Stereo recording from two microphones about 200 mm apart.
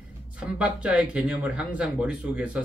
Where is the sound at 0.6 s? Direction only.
5° right (ahead or behind).